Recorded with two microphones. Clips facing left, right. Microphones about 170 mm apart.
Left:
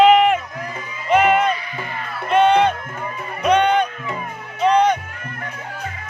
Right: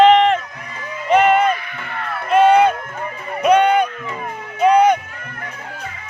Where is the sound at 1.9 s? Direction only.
65° right (ahead or behind).